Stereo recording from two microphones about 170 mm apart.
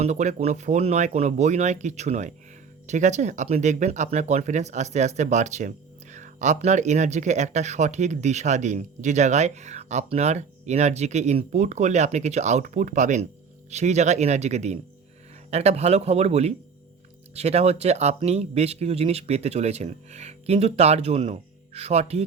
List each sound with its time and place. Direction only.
0.0 s speech: 45° right (ahead or behind)